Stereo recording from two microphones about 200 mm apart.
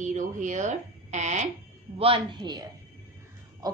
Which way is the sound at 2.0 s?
25° right (ahead or behind).